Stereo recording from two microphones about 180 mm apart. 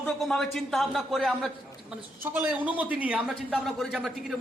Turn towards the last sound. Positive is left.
turn(degrees=0)  # may be behind; listen again after turning